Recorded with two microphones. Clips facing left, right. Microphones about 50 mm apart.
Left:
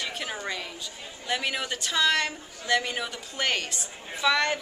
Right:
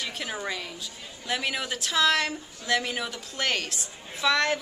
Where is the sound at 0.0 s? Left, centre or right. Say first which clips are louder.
Even; centre.